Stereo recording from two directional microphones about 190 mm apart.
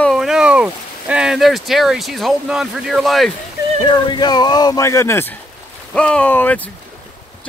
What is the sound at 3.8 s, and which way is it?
Speech, 25° left (ahead or behind).